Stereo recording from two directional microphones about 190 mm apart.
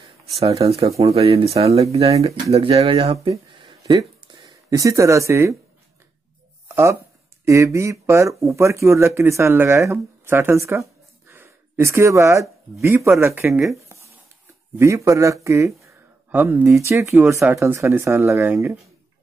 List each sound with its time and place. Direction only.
0.4 s speech: 30° right (ahead or behind); by 5.6 s 15° right (ahead or behind)
6.7 s a sound: 15° right (ahead or behind)
7.4 s speech: 15° right (ahead or behind)
14.8 s speech: 15° right (ahead or behind)